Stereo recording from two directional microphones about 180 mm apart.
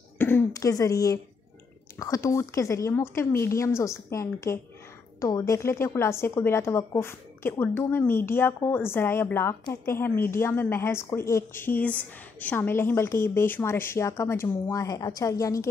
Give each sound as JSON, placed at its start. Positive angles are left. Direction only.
{"t": 0.2, "sound": "a woman's voice", "side_deg": 15}